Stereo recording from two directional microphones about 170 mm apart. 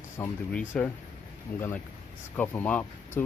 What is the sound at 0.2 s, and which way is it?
Speech, 5° left (ahead or behind).